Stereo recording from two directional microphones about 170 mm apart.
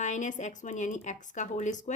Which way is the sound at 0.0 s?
45° left (ahead or behind).